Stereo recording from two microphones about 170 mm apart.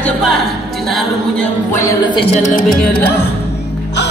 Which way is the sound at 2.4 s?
50° left (ahead or behind).